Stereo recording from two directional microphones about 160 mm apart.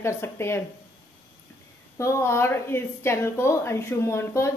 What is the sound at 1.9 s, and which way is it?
A woman's voice, 15° left (ahead or behind).